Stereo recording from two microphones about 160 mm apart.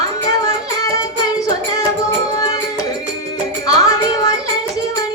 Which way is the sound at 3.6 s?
20° left (ahead or behind).